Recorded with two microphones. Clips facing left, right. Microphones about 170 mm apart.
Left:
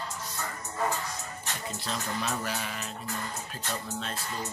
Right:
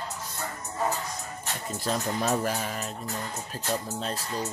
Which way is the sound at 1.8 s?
40° right (ahead or behind).